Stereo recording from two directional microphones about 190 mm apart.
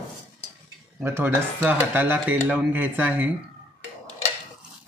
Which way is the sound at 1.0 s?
10° right (ahead or behind).